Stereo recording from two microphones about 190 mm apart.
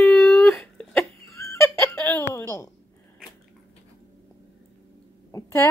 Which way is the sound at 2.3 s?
15° left (ahead or behind).